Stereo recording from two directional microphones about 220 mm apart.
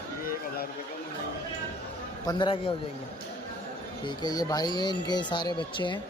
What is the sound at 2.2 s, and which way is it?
Speech, 20° left (ahead or behind).